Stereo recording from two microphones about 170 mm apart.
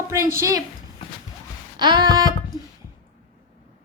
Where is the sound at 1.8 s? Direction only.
25° right (ahead or behind).